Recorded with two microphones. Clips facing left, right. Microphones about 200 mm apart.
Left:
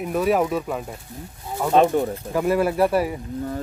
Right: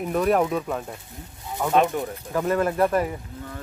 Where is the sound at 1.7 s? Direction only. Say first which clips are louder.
Left 4 dB; 35° left (ahead or behind).